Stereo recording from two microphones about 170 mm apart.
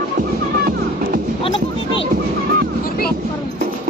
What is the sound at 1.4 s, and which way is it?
Music, 30° left (ahead or behind).